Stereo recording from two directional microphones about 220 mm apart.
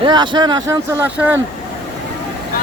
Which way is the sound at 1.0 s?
5° right (ahead or behind).